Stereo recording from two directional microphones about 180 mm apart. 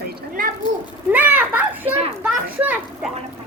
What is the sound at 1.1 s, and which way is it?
Children playing, 10° right (ahead or behind).